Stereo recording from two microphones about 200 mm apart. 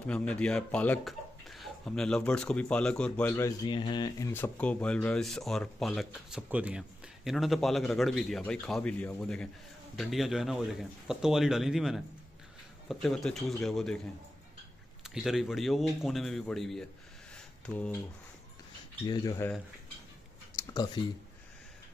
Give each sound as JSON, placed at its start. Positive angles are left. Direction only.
{"t": 0.0, "sound": "speech", "side_deg": 5}
{"t": 15.0, "sound": "speech", "side_deg": 0}
{"t": 19.0, "sound": "speech", "side_deg": 20}
{"t": 20.5, "sound": "a sound", "side_deg": 20}